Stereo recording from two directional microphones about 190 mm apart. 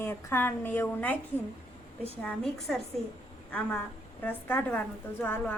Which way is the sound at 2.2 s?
5° left (ahead or behind).